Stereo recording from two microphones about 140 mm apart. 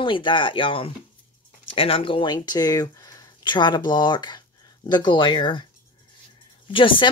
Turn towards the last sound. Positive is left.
turn(degrees=40)  # may be behind; listen again after turning